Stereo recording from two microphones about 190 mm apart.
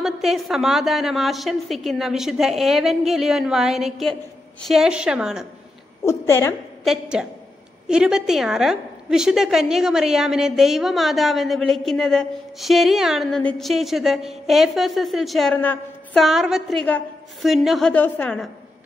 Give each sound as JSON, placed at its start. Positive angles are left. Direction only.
{"t": 0.0, "sound": "a woman's voice", "side_deg": 0}
{"t": 6.0, "sound": "a woman's voice", "side_deg": 15}
{"t": 6.8, "sound": "a woman's voice", "side_deg": 0}